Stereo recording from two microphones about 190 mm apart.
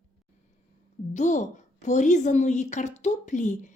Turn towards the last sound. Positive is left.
turn(degrees=40)  # may be behind; listen again after turning